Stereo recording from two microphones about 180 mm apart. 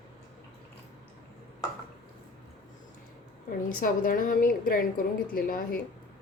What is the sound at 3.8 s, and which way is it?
A woman's voice, 50° left (ahead or behind).